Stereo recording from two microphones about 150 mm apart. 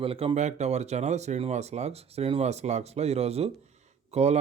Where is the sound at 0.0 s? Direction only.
35° right (ahead or behind).